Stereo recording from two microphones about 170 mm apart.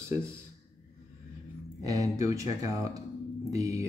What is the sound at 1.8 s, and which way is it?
Speech, 20° right (ahead or behind).